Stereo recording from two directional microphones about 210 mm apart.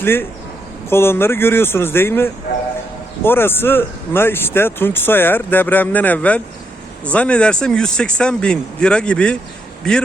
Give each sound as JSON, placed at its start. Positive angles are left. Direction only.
{"t": 0.0, "sound": "speech", "side_deg": 10}